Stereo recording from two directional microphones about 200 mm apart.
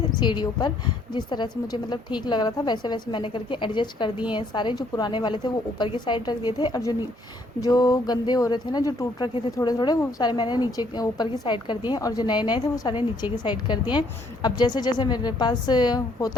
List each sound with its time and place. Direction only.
0.2 s speech: 20° left (ahead or behind)